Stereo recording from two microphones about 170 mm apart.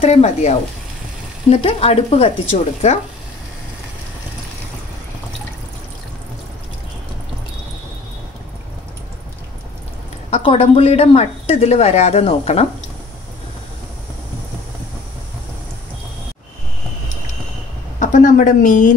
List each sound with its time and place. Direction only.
0.0 s speech: 40° left (ahead or behind)
10.3 s speech: 35° left (ahead or behind)
17.9 s a woman's voice: 50° left (ahead or behind)